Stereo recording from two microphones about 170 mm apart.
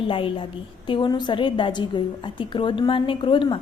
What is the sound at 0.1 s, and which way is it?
A woman's voice, 30° left (ahead or behind).